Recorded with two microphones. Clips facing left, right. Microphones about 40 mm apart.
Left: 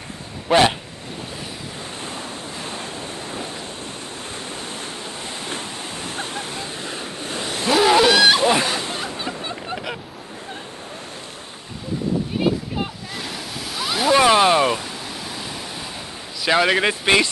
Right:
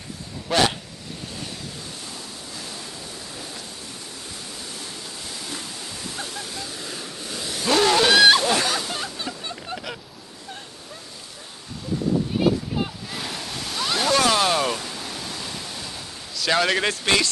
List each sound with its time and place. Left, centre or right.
0.5 s speech: left
2.0 s waves: left
7.7 s a sound: centre
8.1 s splash: centre
8.4 s a sound: centre
12.4 s a sound: centre
13.1 s waves: centre
14.1 s waves: left
16.3 s speech: centre